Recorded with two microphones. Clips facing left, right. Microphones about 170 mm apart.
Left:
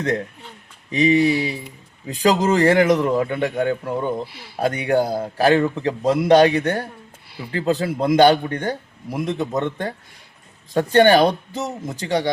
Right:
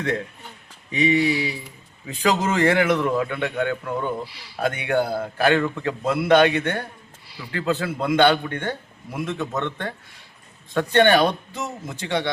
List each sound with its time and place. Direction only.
0.9 s a man's voice: 35° left (ahead or behind)
2.0 s a man's voice: 35° left (ahead or behind)
3.9 s speech: 20° left (ahead or behind)
4.3 s speech: 50° left (ahead or behind)
4.6 s a man's voice: 35° left (ahead or behind)
7.3 s a sound: 55° left (ahead or behind)
7.5 s a man's voice: 35° left (ahead or behind)